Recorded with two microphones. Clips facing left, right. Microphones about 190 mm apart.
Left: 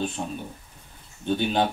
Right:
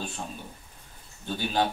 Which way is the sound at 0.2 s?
20° left (ahead or behind).